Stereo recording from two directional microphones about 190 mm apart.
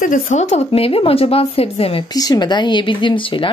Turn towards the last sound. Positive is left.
turn(degrees=25)  # may be behind; listen again after turning